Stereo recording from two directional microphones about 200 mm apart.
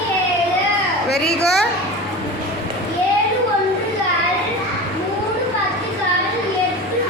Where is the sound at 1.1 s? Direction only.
50° left (ahead or behind).